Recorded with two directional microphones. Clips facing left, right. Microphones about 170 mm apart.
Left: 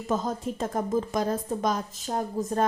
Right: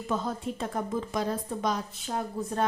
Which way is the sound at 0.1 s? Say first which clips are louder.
Left 3 dB; 40° left (ahead or behind).